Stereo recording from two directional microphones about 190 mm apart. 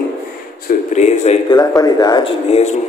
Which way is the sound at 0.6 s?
40° left (ahead or behind).